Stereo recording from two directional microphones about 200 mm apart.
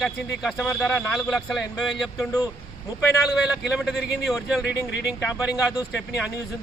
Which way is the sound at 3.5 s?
Centre (ahead or behind).